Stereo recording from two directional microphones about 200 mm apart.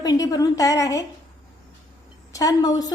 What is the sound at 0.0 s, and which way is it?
A woman's voice, 20° left (ahead or behind).